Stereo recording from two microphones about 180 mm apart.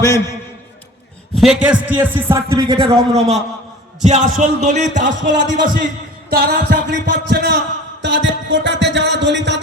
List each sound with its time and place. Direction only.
1.4 s a man's voice: 5° right (ahead or behind); by 5.7 s 45° right (ahead or behind)
6.3 s music: 65° right (ahead or behind)
8.0 s music: 85° right